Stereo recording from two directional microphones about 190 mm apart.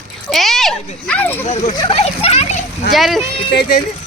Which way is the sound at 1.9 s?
35° left (ahead or behind).